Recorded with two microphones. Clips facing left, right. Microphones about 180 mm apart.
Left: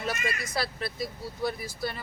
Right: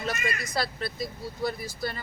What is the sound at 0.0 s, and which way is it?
Speech, 5° left (ahead or behind).